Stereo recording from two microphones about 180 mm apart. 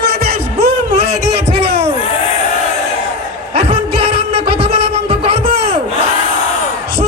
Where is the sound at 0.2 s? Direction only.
60° right (ahead or behind).